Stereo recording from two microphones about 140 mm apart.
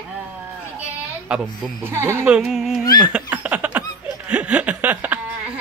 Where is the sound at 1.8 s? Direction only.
20° right (ahead or behind).